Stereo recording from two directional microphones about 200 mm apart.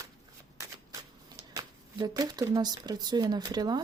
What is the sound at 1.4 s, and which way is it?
Speech, 20° right (ahead or behind).